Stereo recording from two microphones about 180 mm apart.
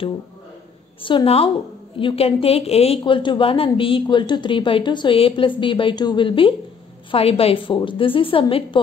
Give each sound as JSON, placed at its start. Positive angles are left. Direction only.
{"t": 1.0, "sound": "a woman's voice", "side_deg": 30}